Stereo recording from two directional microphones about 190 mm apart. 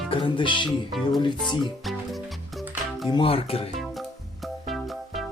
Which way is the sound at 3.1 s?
30° left (ahead or behind).